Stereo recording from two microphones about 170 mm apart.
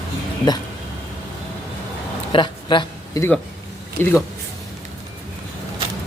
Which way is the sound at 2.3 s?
25° left (ahead or behind).